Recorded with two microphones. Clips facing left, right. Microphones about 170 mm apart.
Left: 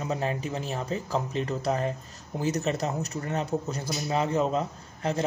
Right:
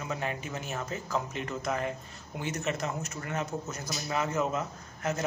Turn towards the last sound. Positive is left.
turn(degrees=30)  # may be behind; listen again after turning